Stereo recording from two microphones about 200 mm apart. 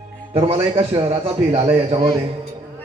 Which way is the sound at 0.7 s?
30° right (ahead or behind).